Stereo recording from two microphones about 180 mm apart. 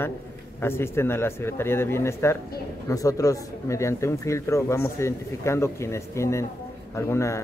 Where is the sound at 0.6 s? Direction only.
15° left (ahead or behind).